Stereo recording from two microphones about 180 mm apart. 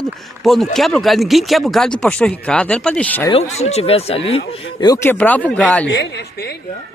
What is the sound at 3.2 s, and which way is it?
Speech, 35° left (ahead or behind).